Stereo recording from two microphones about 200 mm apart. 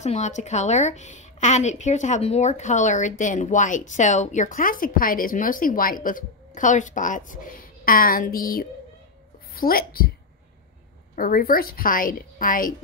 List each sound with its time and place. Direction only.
0.0 s a woman's voice: 35° left (ahead or behind)
11.1 s a woman's voice: 45° left (ahead or behind)